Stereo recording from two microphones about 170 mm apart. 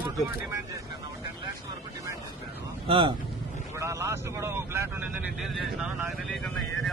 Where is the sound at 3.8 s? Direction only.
20° right (ahead or behind).